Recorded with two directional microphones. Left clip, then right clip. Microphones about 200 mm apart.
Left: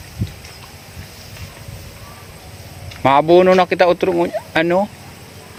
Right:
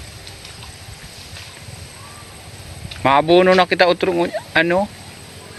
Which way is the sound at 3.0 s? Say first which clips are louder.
Left 2 dB; 10° left (ahead or behind).